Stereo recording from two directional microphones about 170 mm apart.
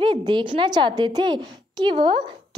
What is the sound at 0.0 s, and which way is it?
A woman's voice, 30° right (ahead or behind).